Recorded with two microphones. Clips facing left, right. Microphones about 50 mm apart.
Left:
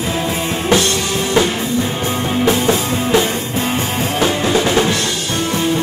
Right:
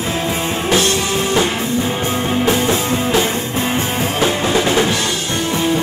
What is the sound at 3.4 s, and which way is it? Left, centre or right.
Music, centre.